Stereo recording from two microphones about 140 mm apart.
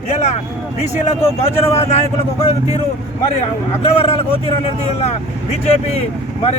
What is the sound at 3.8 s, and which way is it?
A man's voice, 40° left (ahead or behind).